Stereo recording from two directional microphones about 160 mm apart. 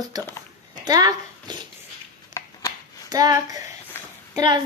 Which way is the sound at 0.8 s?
25° right (ahead or behind).